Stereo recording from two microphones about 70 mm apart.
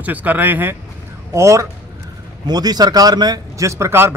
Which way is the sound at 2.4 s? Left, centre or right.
Right.